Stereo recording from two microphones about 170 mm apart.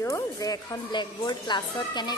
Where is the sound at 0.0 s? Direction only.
20° left (ahead or behind).